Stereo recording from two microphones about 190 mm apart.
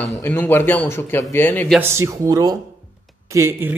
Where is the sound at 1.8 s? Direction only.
15° right (ahead or behind).